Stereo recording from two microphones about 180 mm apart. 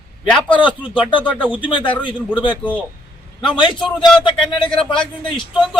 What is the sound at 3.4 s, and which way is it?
Speech, 25° left (ahead or behind).